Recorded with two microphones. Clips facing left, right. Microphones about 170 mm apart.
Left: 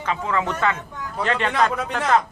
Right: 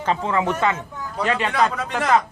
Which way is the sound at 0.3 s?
20° right (ahead or behind).